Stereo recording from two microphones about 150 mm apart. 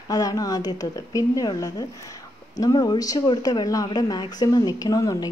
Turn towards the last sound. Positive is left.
turn(degrees=25)  # may be behind; listen again after turning